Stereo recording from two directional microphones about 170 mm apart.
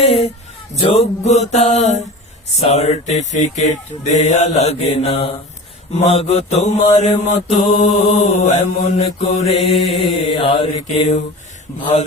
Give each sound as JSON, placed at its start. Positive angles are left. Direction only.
{"t": 0.0, "sound": "music", "side_deg": 35}